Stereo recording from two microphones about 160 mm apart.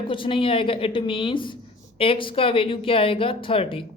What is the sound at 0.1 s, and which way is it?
Speech, 35° left (ahead or behind).